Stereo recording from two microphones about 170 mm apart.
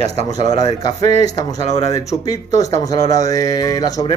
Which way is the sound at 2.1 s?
20° left (ahead or behind).